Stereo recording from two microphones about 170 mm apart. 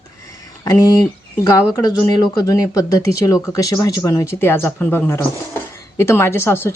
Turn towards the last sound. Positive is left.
turn(degrees=15)  # may be behind; listen again after turning